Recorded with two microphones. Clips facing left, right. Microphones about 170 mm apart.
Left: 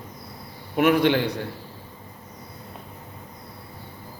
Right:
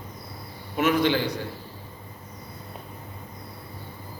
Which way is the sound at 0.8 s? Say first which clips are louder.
Left 3 dB; 60° left (ahead or behind).